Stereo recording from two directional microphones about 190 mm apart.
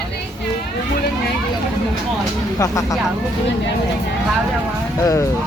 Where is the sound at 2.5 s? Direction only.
15° left (ahead or behind).